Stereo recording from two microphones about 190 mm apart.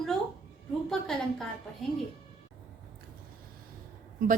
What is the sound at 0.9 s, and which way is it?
Speech, centre (ahead or behind).